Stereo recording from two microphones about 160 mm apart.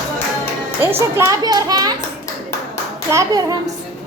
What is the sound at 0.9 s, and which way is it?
Speech, 15° right (ahead or behind).